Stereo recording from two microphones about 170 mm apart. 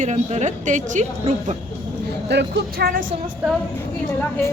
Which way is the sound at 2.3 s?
75° right (ahead or behind).